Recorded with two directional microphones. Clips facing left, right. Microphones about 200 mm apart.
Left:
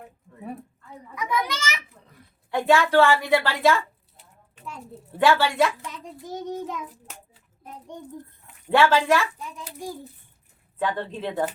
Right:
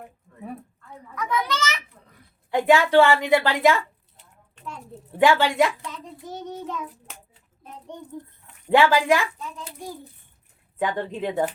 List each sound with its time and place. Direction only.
1.1 s a sound: 10° left (ahead or behind)
2.5 s a woman's voice: 15° right (ahead or behind)
5.2 s a woman's voice: 15° right (ahead or behind)
5.9 s child singing: 10° left (ahead or behind)
8.6 s a woman's voice: 15° right (ahead or behind)
10.8 s a woman's voice: 15° right (ahead or behind)